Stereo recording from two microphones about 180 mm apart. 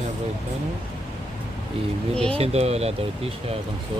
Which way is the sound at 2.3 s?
35° right (ahead or behind).